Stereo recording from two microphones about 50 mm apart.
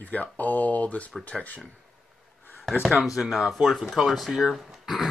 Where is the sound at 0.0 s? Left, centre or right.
Left.